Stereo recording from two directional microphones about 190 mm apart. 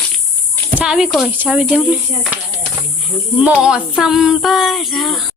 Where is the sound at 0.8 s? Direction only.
5° right (ahead or behind).